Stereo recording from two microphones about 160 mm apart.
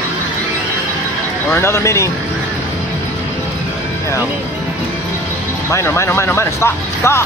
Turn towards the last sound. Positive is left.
turn(degrees=15)  # may be behind; listen again after turning